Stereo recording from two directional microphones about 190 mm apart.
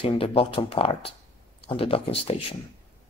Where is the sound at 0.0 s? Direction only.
30° left (ahead or behind).